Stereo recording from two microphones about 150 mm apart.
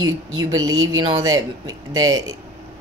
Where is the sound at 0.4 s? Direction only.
25° right (ahead or behind).